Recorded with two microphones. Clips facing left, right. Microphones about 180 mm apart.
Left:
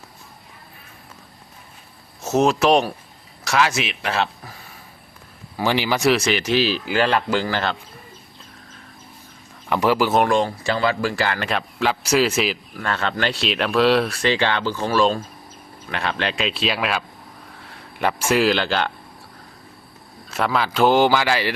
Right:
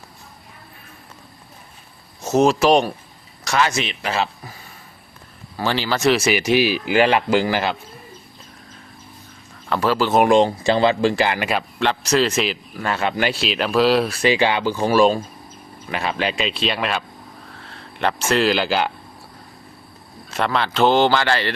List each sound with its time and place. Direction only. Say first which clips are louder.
2.2 s speech: right 2 dB; centre (ahead or behind)
5.5 s speech: left 1 dB; 15° left (ahead or behind)
6.1 s speech: right 3 dB; 5° right (ahead or behind)
9.6 s speech: left 1 dB; 15° left (ahead or behind)
10.2 s speech: right 5 dB; 20° right (ahead or behind)
11.4 s speech: right 1 dB; centre (ahead or behind)
12.8 s speech: right 2 dB; 10° right (ahead or behind)
20.3 s speech: even; 5° left (ahead or behind)